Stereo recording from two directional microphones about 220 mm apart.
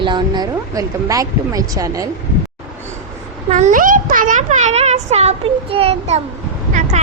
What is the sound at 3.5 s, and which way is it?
A child's voice, 35° right (ahead or behind).